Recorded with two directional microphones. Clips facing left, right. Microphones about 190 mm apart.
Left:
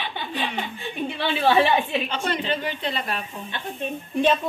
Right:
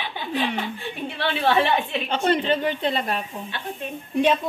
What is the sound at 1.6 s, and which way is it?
Speech, 10° left (ahead or behind).